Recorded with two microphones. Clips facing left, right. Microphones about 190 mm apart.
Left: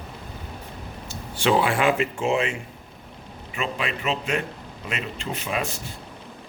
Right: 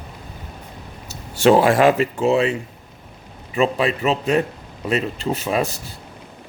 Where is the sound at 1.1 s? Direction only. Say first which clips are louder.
Right 8 dB; 45° right (ahead or behind).